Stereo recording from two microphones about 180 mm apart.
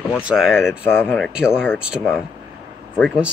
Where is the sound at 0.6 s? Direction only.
15° left (ahead or behind).